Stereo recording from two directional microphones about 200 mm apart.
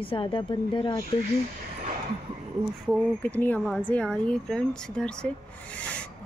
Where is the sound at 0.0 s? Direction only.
25° left (ahead or behind).